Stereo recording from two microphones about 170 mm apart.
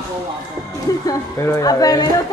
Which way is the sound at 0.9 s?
20° left (ahead or behind).